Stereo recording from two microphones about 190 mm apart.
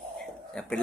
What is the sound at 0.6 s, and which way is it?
Speech, 5° left (ahead or behind).